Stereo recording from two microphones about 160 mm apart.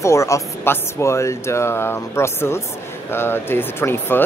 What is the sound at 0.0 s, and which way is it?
Speech, 20° left (ahead or behind).